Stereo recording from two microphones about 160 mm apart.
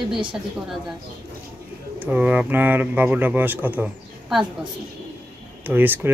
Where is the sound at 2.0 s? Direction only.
10° right (ahead or behind).